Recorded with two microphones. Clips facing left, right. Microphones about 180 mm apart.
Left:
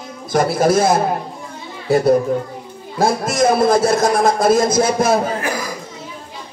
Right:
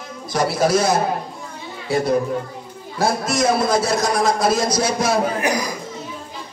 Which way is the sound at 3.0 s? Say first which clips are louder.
Left 4 dB; 50° left (ahead or behind).